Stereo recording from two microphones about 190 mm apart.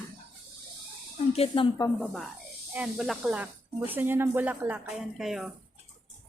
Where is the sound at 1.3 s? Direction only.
30° left (ahead or behind).